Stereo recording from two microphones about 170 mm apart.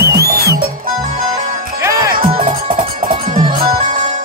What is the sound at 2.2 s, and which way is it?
Music, 50° right (ahead or behind).